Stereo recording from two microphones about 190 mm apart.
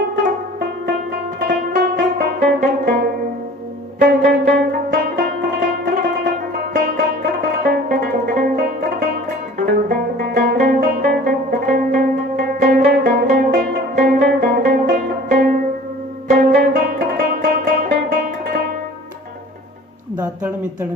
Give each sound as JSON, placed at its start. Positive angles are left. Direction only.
{"t": 0.9, "sound": "music", "side_deg": -50}